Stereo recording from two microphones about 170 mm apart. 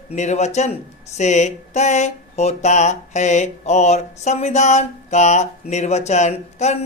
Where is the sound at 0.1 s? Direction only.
40° left (ahead or behind).